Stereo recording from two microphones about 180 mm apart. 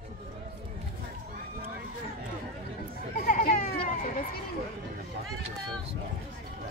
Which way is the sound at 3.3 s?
50° left (ahead or behind).